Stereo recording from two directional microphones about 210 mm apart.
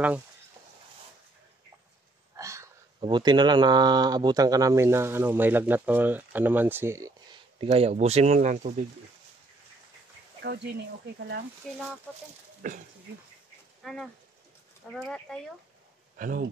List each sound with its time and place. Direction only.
2.3 s a sound: 15° right (ahead or behind)
3.0 s speech: 20° right (ahead or behind)
7.6 s speech: 30° right (ahead or behind)
10.4 s speech: 50° right (ahead or behind)
12.1 s speech: centre (ahead or behind)
12.6 s speech: 40° right (ahead or behind)
13.8 s speech: centre (ahead or behind)
16.2 s speech: 40° right (ahead or behind)